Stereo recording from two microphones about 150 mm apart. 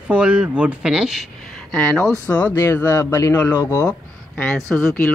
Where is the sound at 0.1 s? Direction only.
5° right (ahead or behind); by 3.8 s 20° left (ahead or behind).